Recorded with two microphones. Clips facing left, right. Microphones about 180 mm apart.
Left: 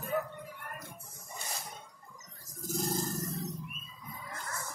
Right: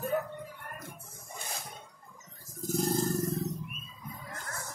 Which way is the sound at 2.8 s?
60° right (ahead or behind).